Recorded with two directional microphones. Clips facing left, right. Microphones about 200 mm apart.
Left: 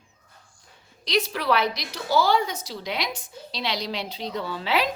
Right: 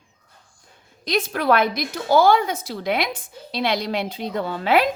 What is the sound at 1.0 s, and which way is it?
A woman's voice, 50° right (ahead or behind).